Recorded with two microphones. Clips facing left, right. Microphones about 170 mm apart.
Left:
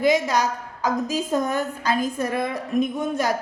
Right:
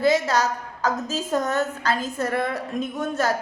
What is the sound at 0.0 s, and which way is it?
A woman's voice, 15° left (ahead or behind).